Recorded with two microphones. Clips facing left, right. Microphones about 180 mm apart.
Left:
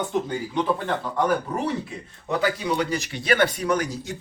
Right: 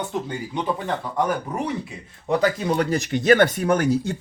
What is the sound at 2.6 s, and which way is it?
Speech, 50° right (ahead or behind).